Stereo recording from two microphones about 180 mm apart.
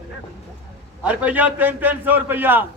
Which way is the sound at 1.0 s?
10° right (ahead or behind).